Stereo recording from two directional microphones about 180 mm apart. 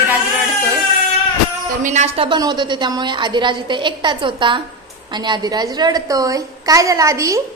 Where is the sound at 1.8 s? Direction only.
40° right (ahead or behind); by 7.4 s 15° right (ahead or behind).